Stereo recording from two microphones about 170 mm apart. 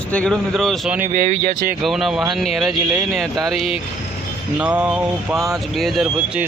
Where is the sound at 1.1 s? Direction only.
50° right (ahead or behind).